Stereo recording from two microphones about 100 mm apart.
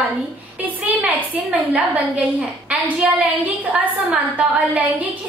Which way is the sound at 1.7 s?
15° right (ahead or behind).